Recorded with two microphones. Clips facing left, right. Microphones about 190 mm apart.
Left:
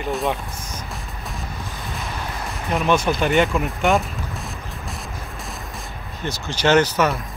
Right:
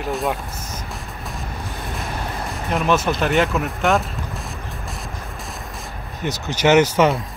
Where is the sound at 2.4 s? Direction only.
Centre (ahead or behind).